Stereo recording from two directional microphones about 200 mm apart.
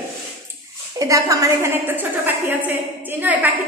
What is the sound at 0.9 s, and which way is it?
A woman's voice, 15° right (ahead or behind).